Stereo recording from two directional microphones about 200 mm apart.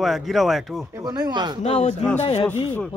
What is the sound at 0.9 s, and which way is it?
Speech, 15° right (ahead or behind).